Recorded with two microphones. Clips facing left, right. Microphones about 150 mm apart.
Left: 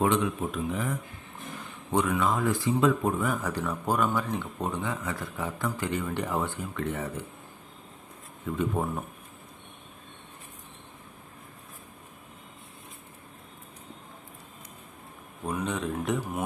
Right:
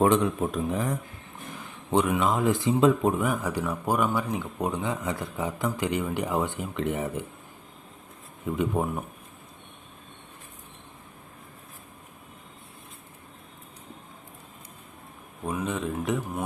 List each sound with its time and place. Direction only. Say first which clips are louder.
0.0 s speech: right 4 dB; 45° right (ahead or behind)
1.9 s speech: right 2 dB; 20° right (ahead or behind)
8.4 s speech: right 2 dB; 15° right (ahead or behind)
15.4 s speech: right 1 dB; 5° right (ahead or behind)